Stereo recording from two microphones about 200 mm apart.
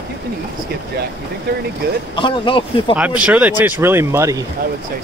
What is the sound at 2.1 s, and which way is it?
Speech, 25° left (ahead or behind).